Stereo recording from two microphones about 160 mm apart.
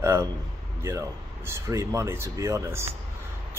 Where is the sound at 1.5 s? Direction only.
20° right (ahead or behind).